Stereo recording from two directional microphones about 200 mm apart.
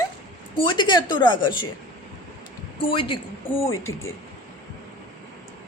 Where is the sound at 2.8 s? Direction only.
25° left (ahead or behind).